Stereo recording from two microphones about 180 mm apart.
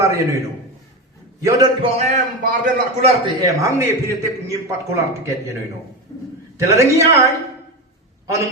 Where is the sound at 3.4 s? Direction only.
15° right (ahead or behind).